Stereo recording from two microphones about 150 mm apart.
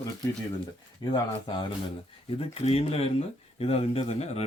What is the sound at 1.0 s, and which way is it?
Speech, 30° left (ahead or behind).